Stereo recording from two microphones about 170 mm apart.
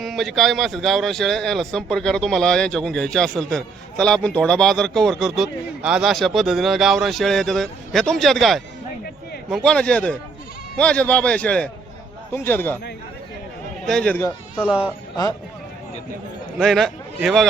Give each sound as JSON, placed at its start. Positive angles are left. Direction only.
{"t": 0.0, "sound": "speech", "side_deg": 0}
{"t": 9.6, "sound": "a man's voice", "side_deg": 5}
{"t": 13.8, "sound": "speech", "side_deg": 5}
{"t": 14.6, "sound": "speech", "side_deg": -5}
{"t": 15.1, "sound": "speech", "side_deg": 20}
{"t": 16.6, "sound": "a man's voice", "side_deg": 0}